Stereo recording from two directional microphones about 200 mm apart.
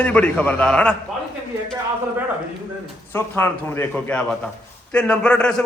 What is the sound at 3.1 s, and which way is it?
A man's voice, 10° left (ahead or behind).